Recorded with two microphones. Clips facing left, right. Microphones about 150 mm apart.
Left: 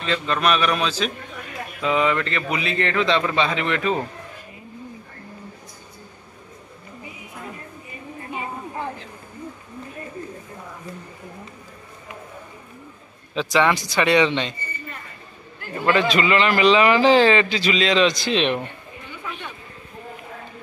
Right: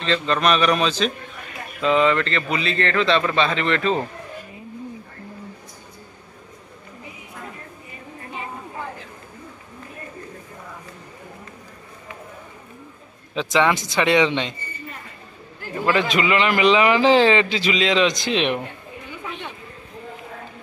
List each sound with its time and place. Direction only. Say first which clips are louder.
0.0 s a man's voice: right 2 dB; 5° left (ahead or behind)
13.3 s speech: even; 15° right (ahead or behind)
15.8 s a man's voice: left 1 dB; 20° right (ahead or behind)
19.2 s a sound: right 1 dB; 20° right (ahead or behind)